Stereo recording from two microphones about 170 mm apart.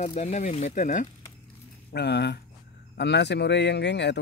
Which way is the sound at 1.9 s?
80° left.